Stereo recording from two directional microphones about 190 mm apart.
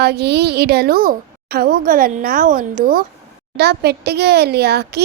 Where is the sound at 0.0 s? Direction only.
60° right (ahead or behind).